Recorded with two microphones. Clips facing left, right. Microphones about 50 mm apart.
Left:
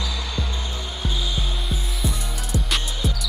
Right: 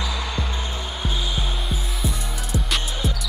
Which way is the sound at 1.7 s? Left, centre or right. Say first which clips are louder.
Even; centre.